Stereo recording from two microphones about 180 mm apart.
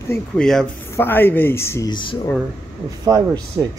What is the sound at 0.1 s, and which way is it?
Speech, 5° left (ahead or behind).